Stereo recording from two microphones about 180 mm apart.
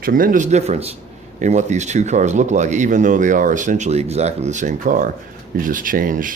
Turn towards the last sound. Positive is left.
turn(degrees=-50)  # may be behind; listen again after turning